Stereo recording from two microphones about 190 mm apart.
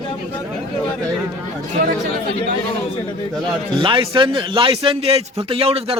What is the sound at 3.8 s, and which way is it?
A man's voice, 25° right (ahead or behind).